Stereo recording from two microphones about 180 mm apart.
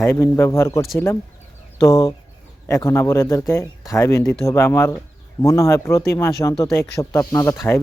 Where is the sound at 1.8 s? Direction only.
20° left (ahead or behind).